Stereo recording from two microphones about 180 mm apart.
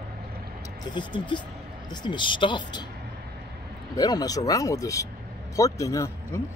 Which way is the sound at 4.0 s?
20° left (ahead or behind).